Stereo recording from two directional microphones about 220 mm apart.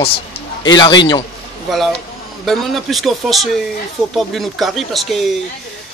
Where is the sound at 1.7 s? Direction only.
Centre (ahead or behind).